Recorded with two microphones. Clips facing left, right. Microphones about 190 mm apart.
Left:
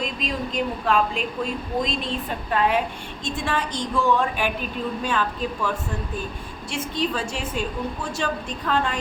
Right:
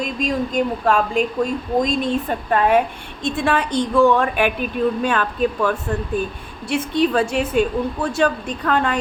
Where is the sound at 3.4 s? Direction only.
60° right (ahead or behind).